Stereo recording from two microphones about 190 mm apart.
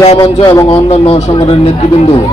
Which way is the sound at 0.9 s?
30° left (ahead or behind).